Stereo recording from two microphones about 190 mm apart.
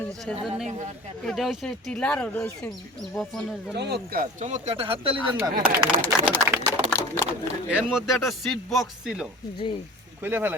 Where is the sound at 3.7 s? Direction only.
60° right (ahead or behind); by 5.3 s 30° right (ahead or behind).